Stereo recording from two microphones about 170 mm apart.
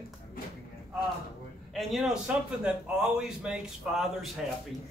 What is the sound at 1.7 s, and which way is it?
A man's voice, centre (ahead or behind).